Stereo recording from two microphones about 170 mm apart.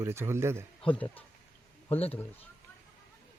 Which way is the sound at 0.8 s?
10° left (ahead or behind).